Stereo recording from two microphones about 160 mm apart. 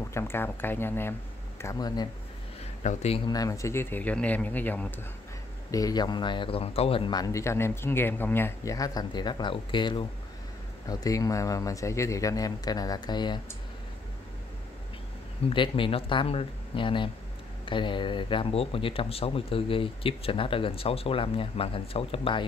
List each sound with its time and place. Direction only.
0.1 s speech: 15° left (ahead or behind)
2.8 s a man's voice: 45° left (ahead or behind)
3.3 s speech: 20° left (ahead or behind)
5.7 s speech: 20° left (ahead or behind)
15.5 s speech: 30° left (ahead or behind)